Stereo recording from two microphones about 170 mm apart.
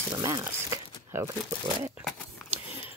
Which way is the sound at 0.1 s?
20° right (ahead or behind).